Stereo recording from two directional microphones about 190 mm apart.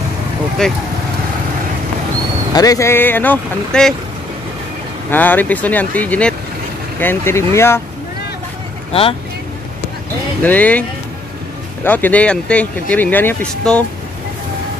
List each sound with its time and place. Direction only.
0.6 s speech: 5° left (ahead or behind)
2.5 s speech: 20° left (ahead or behind)
5.1 s speech: 10° left (ahead or behind)
10.4 s speech: 10° left (ahead or behind)